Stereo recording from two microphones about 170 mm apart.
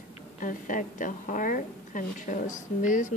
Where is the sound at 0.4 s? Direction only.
50° left (ahead or behind).